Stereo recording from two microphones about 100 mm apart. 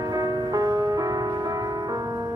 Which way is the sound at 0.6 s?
40° right (ahead or behind).